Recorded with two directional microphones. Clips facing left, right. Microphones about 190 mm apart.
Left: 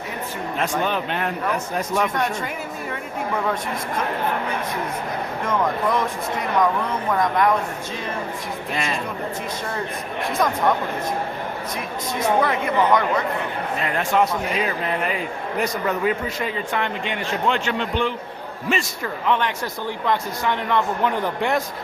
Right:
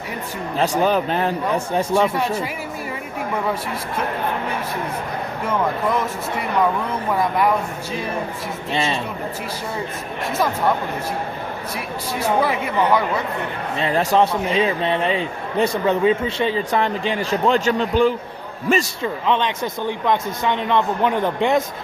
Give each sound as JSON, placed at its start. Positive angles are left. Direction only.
{"t": 0.5, "sound": "a man's voice", "side_deg": -35}
{"t": 5.5, "sound": "speech", "side_deg": -5}
{"t": 7.1, "sound": "speech", "side_deg": -10}
{"t": 8.7, "sound": "a man's voice", "side_deg": -30}
{"t": 10.3, "sound": "speech", "side_deg": -5}
{"t": 12.2, "sound": "speech", "side_deg": -10}
{"t": 13.7, "sound": "a man's voice", "side_deg": -30}
{"t": 19.0, "sound": "a man's voice", "side_deg": -20}